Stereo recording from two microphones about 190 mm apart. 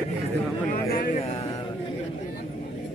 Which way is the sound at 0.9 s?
50° left (ahead or behind).